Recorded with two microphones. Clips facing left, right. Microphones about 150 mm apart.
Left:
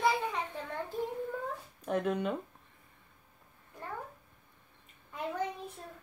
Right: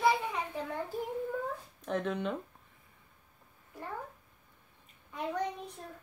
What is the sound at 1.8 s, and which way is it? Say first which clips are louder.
Speech: left 2 dB; 5° left (ahead or behind).